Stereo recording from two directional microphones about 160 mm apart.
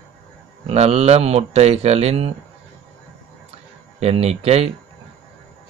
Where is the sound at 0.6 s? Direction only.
40° right (ahead or behind).